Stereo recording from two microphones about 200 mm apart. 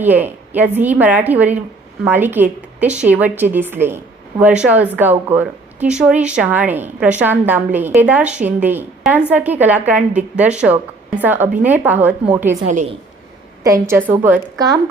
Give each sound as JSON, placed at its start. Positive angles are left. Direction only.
{"t": 0.0, "sound": "a woman's voice", "side_deg": -10}
{"t": 12.6, "sound": "a woman's voice", "side_deg": -35}
{"t": 13.7, "sound": "speech", "side_deg": -15}